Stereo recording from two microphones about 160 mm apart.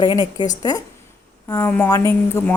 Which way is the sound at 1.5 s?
15° left (ahead or behind).